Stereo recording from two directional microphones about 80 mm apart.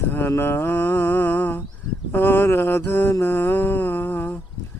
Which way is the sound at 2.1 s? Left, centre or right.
Left.